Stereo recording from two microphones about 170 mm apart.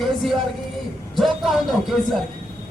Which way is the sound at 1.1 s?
Centre (ahead or behind).